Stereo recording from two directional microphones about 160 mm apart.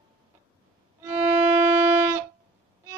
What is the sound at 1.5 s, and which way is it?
Music, 15° right (ahead or behind).